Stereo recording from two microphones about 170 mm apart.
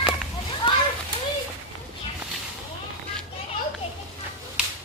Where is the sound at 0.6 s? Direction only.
30° left (ahead or behind).